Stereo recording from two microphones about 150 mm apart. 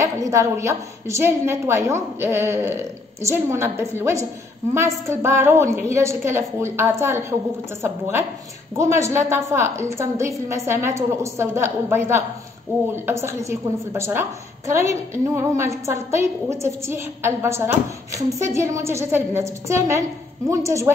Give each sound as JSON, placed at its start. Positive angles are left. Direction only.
{"t": 0.0, "sound": "a woman's voice", "side_deg": -20}